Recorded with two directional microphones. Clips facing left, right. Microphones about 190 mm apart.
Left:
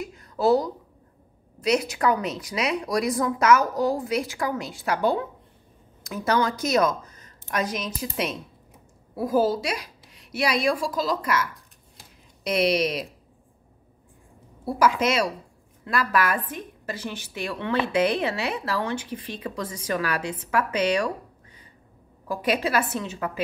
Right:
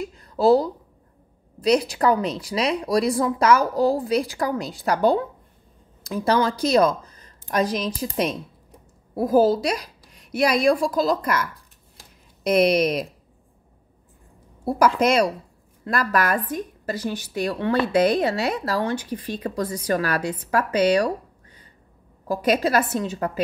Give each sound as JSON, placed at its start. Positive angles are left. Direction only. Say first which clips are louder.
{"t": 0.0, "sound": "a sound", "louder": "right 4 dB", "side_deg": -30}
{"t": 1.6, "sound": "a woman's voice", "louder": "right 4 dB", "side_deg": -35}
{"t": 12.4, "sound": "speech", "louder": "right 4 dB", "side_deg": -50}
{"t": 14.6, "sound": "a woman's voice", "louder": "right 3 dB", "side_deg": -45}
{"t": 22.3, "sound": "a woman's voice", "louder": "right 4 dB", "side_deg": -40}